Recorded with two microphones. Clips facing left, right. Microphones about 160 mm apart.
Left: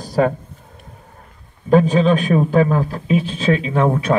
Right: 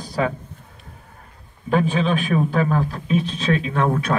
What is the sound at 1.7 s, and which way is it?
A man's voice, 40° left (ahead or behind).